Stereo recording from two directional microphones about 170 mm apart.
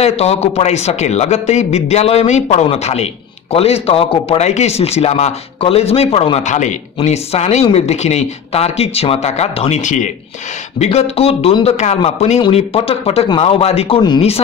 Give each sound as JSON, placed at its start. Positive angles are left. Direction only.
{"t": 0.0, "sound": "speech", "side_deg": 40}